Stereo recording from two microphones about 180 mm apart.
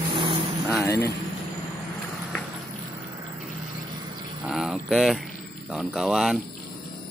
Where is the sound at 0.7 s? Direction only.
15° left (ahead or behind).